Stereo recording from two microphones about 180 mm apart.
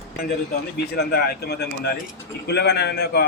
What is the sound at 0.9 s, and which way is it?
A man's voice, 60° left (ahead or behind).